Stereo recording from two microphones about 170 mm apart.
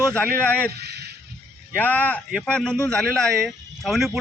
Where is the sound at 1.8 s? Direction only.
10° left (ahead or behind).